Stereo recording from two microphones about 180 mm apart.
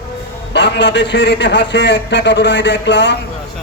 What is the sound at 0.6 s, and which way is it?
A man's voice, 80° left.